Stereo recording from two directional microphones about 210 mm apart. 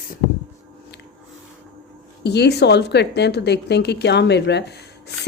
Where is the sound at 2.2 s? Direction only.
50° left (ahead or behind).